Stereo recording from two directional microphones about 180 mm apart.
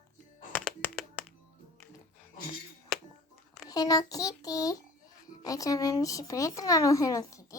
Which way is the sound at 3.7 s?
20° left (ahead or behind).